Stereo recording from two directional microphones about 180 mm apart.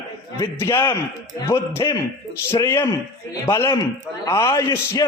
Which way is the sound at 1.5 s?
15° left (ahead or behind).